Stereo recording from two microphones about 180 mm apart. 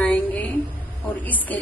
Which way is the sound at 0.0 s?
5° left (ahead or behind).